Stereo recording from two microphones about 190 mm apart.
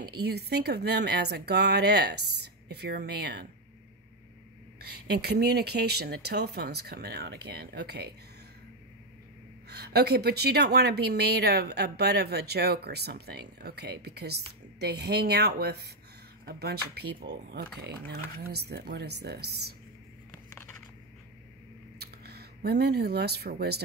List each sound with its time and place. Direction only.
0.0 s a woman's voice: 55° right (ahead or behind)
4.8 s a woman's voice: 60° right (ahead or behind)
9.7 s a woman's voice: 60° right (ahead or behind)
22.0 s speech: 55° right (ahead or behind)